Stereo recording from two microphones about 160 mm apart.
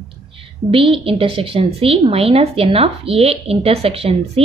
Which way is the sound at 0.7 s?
35° right (ahead or behind).